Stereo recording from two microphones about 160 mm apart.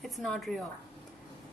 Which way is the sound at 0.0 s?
Centre (ahead or behind).